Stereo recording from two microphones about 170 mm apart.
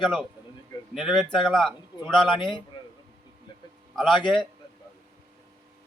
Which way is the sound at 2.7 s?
30° left (ahead or behind).